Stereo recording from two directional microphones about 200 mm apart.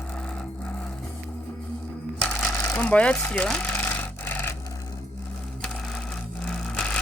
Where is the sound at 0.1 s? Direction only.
5° left (ahead or behind).